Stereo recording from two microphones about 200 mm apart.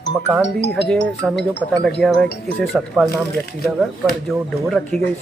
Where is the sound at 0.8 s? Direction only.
5° left (ahead or behind).